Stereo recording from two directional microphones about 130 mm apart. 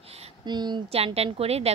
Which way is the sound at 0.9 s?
50° right (ahead or behind).